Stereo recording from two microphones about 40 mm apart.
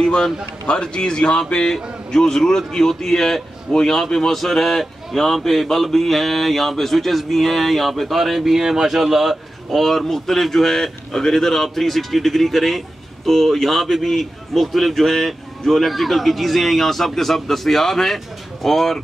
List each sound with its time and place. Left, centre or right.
0.0 s speech: centre